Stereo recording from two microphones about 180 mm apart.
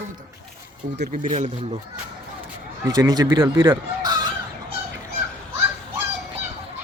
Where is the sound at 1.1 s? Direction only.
45° right (ahead or behind).